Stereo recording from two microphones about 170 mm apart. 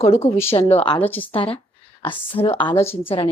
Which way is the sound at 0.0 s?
40° left (ahead or behind).